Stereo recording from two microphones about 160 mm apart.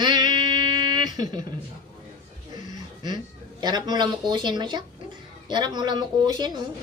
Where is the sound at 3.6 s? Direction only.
25° right (ahead or behind).